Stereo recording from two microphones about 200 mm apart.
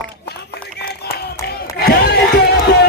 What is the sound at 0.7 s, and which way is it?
Music, 55° left (ahead or behind).